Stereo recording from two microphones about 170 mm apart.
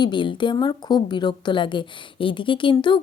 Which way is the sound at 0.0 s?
30° left (ahead or behind).